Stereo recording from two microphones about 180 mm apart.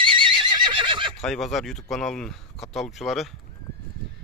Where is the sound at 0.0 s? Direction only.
30° right (ahead or behind).